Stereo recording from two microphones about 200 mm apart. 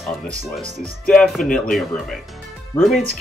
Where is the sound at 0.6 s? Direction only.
35° right (ahead or behind).